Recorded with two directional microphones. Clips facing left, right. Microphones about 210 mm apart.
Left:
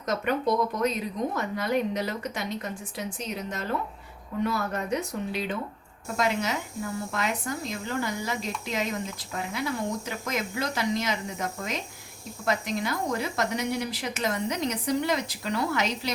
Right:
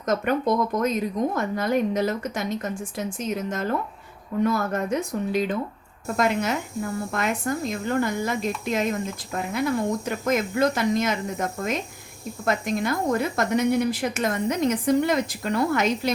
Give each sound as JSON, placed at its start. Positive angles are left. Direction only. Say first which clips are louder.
{"t": 0.0, "sound": "speech", "louder": "right 3 dB", "side_deg": -50}